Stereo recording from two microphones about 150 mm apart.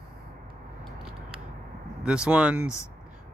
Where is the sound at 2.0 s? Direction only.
5° right (ahead or behind).